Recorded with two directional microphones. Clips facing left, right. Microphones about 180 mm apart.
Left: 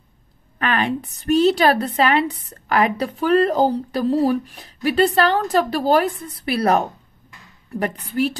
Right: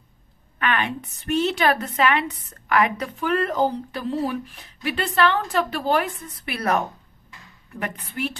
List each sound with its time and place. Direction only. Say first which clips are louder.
0.6 s a woman's voice: left 4 dB; 35° left (ahead or behind)